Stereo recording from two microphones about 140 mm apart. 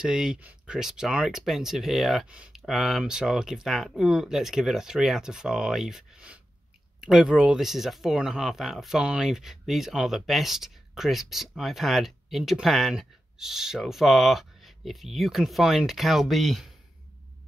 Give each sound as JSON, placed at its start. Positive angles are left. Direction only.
{"t": 0.0, "sound": "speech", "side_deg": -5}